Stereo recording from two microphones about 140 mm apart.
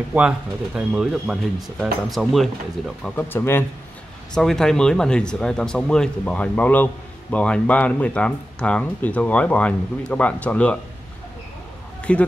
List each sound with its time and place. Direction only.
0.7 s speech: 5° right (ahead or behind)
3.0 s speech: 15° left (ahead or behind)
4.4 s speech: 5° left (ahead or behind)
12.0 s speech: 10° left (ahead or behind)